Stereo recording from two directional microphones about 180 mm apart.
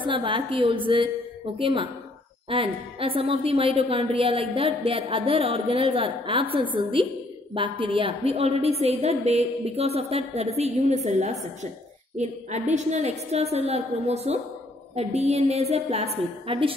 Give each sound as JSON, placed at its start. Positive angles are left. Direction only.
{"t": 0.0, "sound": "a woman's voice", "side_deg": -25}